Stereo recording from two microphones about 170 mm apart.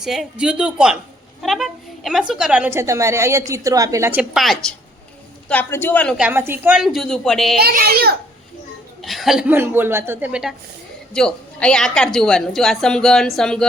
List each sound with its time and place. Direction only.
0.0 s a woman's voice: centre (ahead or behind)
5.5 s a man's voice: 10° left (ahead or behind)
6.1 s a woman's voice: 10° right (ahead or behind)
7.6 s a child's voice: 60° right (ahead or behind)
9.0 s a woman's voice: centre (ahead or behind)
11.1 s a woman's voice: 5° left (ahead or behind)